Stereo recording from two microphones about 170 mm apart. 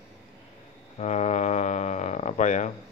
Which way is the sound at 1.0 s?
45° left (ahead or behind).